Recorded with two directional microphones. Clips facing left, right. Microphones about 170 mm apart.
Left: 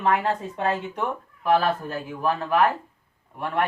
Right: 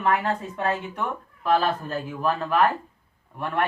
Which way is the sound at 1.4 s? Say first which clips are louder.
Left 1 dB; 15° left (ahead or behind).